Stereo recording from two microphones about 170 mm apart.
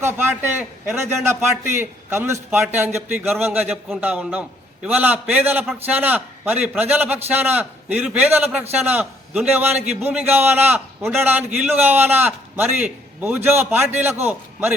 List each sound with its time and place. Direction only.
0.0 s a man's voice: 15° right (ahead or behind)